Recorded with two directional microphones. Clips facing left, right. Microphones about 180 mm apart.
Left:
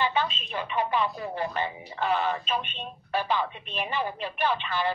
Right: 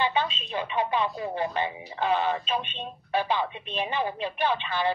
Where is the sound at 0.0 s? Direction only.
20° right (ahead or behind).